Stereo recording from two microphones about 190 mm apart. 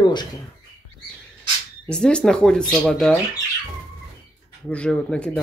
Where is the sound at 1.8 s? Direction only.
5° left (ahead or behind).